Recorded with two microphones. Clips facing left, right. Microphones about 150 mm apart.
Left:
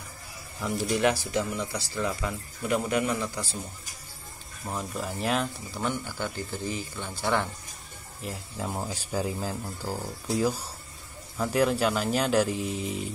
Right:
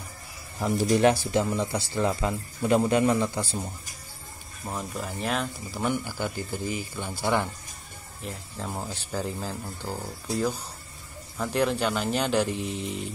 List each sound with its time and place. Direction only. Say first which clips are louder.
0.6 s speech: right 4 dB; 40° right (ahead or behind)
4.6 s speech: even; centre (ahead or behind)
5.8 s speech: right 3 dB; 10° right (ahead or behind)
8.2 s speech: left 1 dB; 5° left (ahead or behind)